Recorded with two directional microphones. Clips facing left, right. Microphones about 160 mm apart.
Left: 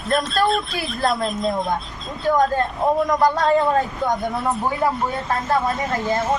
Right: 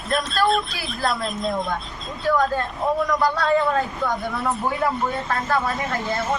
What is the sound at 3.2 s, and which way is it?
Speech, 45° left (ahead or behind).